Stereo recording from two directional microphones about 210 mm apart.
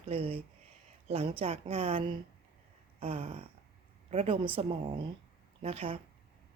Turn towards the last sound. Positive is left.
turn(degrees=-25)  # may be behind; listen again after turning